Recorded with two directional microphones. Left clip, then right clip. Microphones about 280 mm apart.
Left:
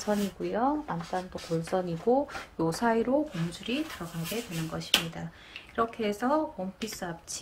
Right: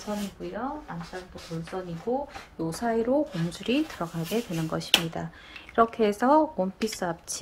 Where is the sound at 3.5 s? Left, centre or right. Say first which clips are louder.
Right 8 dB; centre.